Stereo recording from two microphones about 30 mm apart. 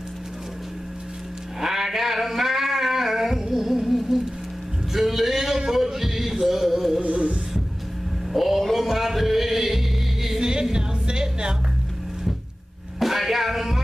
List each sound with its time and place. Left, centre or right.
1.6 s a sound: centre
7.0 s music: right
8.3 s a sound: centre
8.7 s music: centre
10.4 s music: right
13.0 s music: centre